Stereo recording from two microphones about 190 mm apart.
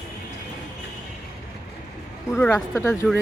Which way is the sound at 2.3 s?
5° left (ahead or behind).